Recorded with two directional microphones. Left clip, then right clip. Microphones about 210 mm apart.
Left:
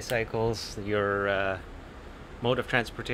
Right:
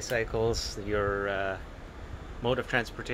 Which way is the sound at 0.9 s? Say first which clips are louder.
Left 3 dB; 25° left (ahead or behind).